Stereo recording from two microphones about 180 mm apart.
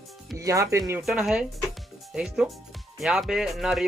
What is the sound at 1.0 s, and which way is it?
Speech, 5° right (ahead or behind).